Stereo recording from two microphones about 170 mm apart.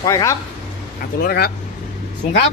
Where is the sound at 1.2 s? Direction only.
65° left (ahead or behind).